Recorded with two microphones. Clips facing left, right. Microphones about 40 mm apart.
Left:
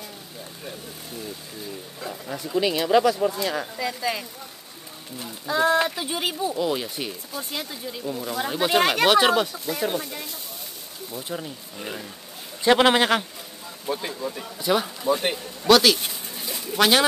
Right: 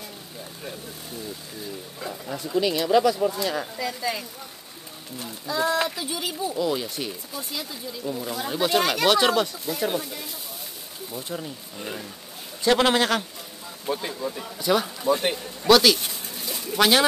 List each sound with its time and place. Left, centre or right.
2.0 s speech: centre
2.6 s speech: centre
5.5 s speech: left
6.5 s speech: centre
8.0 s speech: centre
8.4 s speech: centre
9.1 s speech: centre
11.1 s speech: centre
12.6 s speech: centre
13.8 s speech: centre